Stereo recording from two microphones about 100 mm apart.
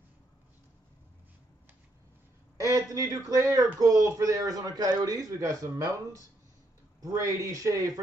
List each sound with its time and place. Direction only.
2.6 s a man's voice: 35° right (ahead or behind)